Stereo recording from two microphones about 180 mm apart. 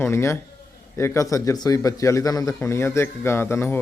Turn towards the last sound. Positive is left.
turn(degrees=15)  # may be behind; listen again after turning